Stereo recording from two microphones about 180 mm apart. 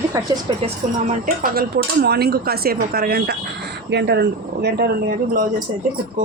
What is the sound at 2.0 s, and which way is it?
Speech, 60° right (ahead or behind).